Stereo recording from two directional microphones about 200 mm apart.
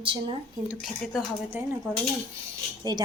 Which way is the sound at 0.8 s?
5° right (ahead or behind).